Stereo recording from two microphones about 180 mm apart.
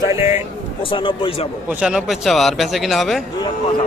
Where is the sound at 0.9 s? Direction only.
30° left (ahead or behind).